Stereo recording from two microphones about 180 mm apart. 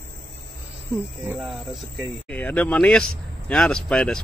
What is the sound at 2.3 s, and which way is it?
Speech, 10° left (ahead or behind).